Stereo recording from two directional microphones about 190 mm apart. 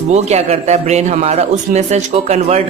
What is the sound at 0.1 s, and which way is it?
A man's voice, 35° right (ahead or behind).